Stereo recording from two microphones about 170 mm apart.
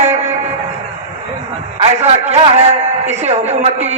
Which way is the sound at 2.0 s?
40° right (ahead or behind).